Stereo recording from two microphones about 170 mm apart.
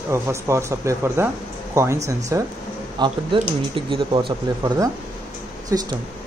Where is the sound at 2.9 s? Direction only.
25° right (ahead or behind).